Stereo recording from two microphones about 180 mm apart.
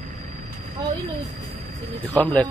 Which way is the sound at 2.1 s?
5° left (ahead or behind).